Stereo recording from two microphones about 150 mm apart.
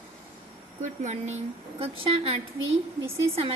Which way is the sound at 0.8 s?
50° right (ahead or behind).